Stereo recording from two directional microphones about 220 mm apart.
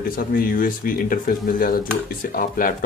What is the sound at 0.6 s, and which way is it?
A man's voice, 40° left (ahead or behind).